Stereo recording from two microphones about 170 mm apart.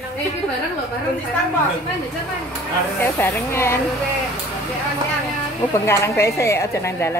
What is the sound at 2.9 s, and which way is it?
Speech, 10° left (ahead or behind).